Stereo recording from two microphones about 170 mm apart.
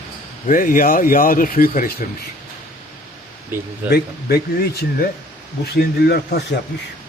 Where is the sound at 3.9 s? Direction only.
65° left (ahead or behind).